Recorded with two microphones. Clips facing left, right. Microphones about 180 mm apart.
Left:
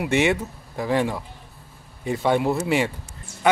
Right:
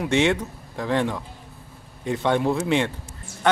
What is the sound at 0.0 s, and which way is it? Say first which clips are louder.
Speech: even; 10° left (ahead or behind).